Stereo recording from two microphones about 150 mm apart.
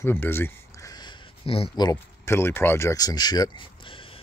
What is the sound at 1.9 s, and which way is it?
Speech, 15° left (ahead or behind).